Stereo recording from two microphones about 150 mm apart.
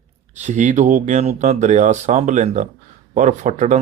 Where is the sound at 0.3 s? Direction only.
55° right (ahead or behind).